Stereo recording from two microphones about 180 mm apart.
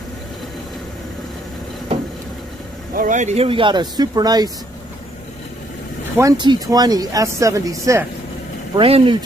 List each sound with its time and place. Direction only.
2.9 s speech: 50° right (ahead or behind); by 4.5 s 20° right (ahead or behind)
6.1 s speech: 20° right (ahead or behind)
8.7 s speech: 30° right (ahead or behind)